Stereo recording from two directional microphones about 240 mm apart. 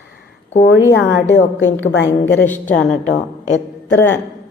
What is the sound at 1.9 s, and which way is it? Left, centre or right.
Speech, left.